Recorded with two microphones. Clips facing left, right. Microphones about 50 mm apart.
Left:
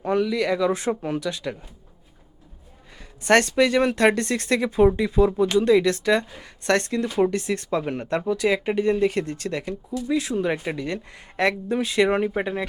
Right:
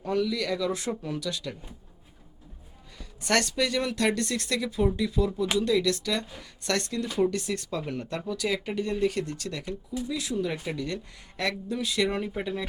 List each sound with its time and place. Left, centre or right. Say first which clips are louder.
0.0 s speech: left 5 dB; left
3.0 s speech: left 8 dB; left